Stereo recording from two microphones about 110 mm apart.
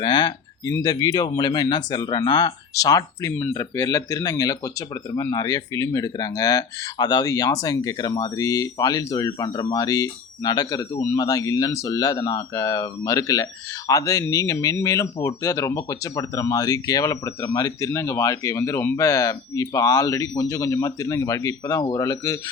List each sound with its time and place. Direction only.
0.0 s speech: 40° left (ahead or behind)